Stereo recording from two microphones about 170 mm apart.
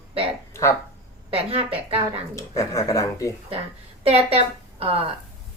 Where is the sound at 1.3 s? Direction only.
35° right (ahead or behind).